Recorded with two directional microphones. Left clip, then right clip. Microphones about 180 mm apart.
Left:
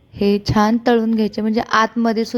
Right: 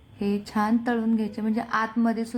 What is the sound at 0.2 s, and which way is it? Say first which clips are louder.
A woman's voice: left 11 dB; 35° left (ahead or behind).